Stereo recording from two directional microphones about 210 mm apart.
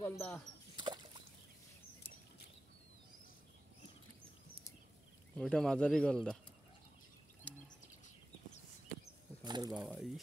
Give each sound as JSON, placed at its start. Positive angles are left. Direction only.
{"t": 0.1, "sound": "speech", "side_deg": 5}
{"t": 0.7, "sound": "a sound", "side_deg": -20}
{"t": 5.4, "sound": "speech", "side_deg": 5}
{"t": 9.4, "sound": "speech", "side_deg": -20}
{"t": 9.7, "sound": "speech", "side_deg": 0}